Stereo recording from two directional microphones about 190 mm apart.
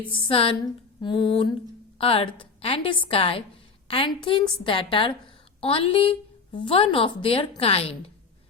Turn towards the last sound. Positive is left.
turn(degrees=30)  # may be behind; listen again after turning